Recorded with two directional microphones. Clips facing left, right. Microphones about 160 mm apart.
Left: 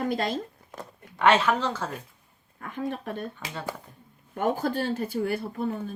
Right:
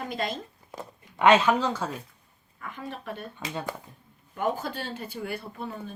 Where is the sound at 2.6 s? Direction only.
50° left (ahead or behind).